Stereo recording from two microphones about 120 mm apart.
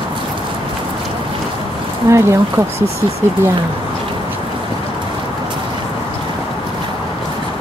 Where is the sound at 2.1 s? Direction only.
25° right (ahead or behind).